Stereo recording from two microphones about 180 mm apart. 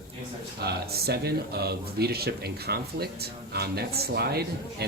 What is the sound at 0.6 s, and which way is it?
Speech, 60° right (ahead or behind).